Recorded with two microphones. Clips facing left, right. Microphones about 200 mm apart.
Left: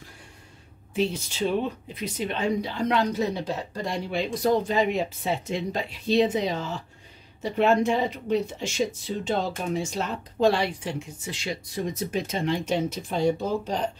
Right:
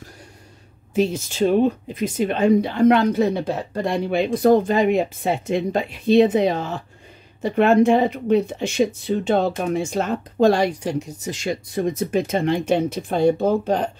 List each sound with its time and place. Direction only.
0.9 s speech: 45° right (ahead or behind)